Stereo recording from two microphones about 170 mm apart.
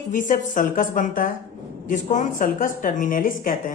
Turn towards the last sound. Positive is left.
turn(degrees=55)  # may be behind; listen again after turning